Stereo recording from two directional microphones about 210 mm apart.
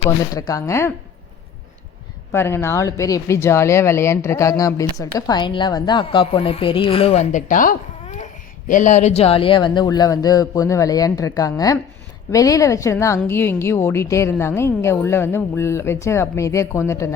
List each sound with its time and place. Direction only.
0.0 s speech: 15° left (ahead or behind)
2.3 s a woman's voice: 10° left (ahead or behind)